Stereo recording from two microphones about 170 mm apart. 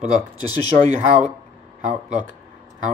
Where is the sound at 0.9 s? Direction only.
10° right (ahead or behind).